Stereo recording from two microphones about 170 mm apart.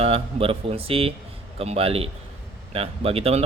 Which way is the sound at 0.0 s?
35° right (ahead or behind).